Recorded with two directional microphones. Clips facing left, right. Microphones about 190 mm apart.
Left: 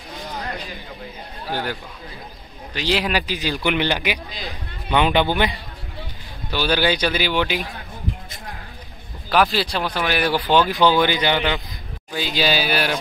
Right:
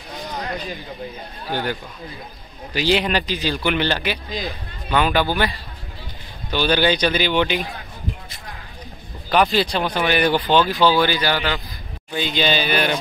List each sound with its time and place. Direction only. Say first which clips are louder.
1.5 s speech: right 2 dB; 5° left (ahead or behind)
6.5 s speech: right 2 dB; 5° left (ahead or behind)
9.3 s speech: right 1 dB; centre (ahead or behind)
10.6 s speech: even; 15° left (ahead or behind)
12.1 s speech: right 1 dB; 5° left (ahead or behind)